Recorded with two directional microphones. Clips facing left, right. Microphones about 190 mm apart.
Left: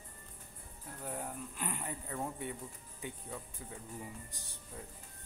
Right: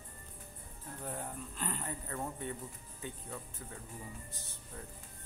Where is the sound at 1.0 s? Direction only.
5° left (ahead or behind).